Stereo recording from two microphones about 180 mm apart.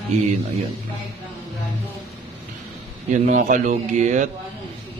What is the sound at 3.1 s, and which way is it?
Speech, 40° right (ahead or behind).